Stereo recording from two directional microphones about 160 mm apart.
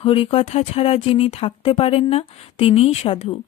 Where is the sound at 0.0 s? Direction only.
35° left (ahead or behind).